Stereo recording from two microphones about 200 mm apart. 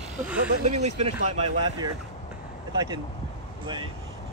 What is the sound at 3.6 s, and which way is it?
Speech, 25° right (ahead or behind).